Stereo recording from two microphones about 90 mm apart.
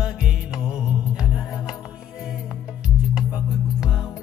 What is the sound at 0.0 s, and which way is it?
Music, 10° right (ahead or behind).